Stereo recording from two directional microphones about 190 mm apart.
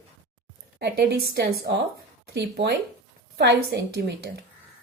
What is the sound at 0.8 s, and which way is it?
A woman's voice, 60° right (ahead or behind).